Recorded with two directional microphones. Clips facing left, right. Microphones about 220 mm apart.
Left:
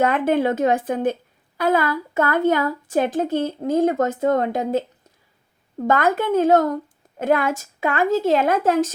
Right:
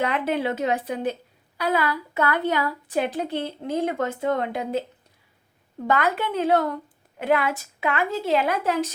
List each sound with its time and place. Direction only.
0.0 s a woman's voice: 50° left (ahead or behind)
5.8 s a woman's voice: 45° left (ahead or behind)